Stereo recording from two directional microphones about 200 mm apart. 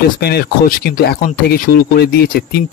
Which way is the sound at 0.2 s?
50° left (ahead or behind).